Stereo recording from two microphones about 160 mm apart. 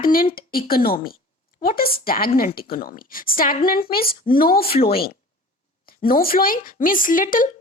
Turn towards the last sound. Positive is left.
turn(degrees=55)  # may be behind; listen again after turning